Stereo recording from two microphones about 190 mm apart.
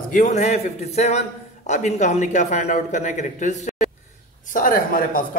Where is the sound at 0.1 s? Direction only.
40° left (ahead or behind).